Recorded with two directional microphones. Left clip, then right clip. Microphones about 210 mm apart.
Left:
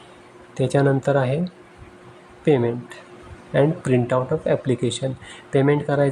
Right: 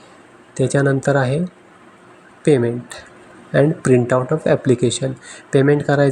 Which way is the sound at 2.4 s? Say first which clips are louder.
Right 3 dB; 10° right (ahead or behind).